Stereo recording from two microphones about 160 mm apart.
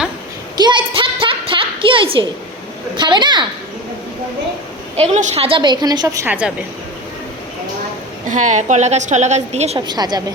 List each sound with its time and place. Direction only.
0.5 s a sound: 30° right (ahead or behind)
2.9 s a woman's voice: 30° right (ahead or behind)
4.9 s a woman's voice: 45° right (ahead or behind); by 6.2 s 25° right (ahead or behind)
6.2 s a woman's voice: 10° right (ahead or behind)
8.3 s a woman's voice: 50° right (ahead or behind)
9.8 s a woman's voice: 25° right (ahead or behind)